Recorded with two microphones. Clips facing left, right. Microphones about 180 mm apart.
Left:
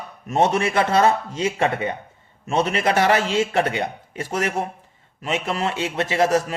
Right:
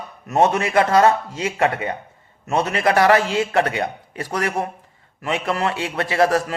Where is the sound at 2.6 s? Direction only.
25° left (ahead or behind).